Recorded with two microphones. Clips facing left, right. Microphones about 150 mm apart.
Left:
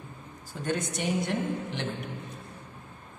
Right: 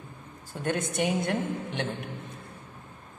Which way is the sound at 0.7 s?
55° right (ahead or behind).